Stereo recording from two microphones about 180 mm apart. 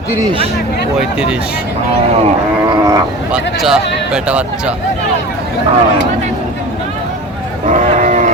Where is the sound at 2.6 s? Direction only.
20° right (ahead or behind).